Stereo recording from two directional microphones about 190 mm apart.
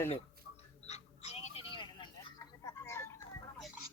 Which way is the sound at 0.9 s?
35° left (ahead or behind).